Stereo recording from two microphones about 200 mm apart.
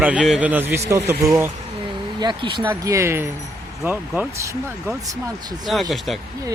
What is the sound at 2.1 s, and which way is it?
Speech, 25° right (ahead or behind).